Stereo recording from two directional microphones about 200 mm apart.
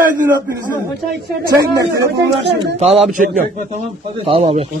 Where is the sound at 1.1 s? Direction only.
55° right (ahead or behind).